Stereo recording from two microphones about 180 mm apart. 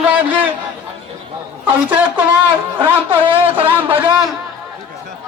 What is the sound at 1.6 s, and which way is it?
Speech, 10° right (ahead or behind).